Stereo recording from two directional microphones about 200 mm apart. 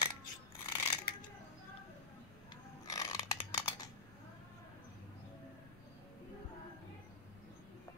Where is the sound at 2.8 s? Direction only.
15° left (ahead or behind).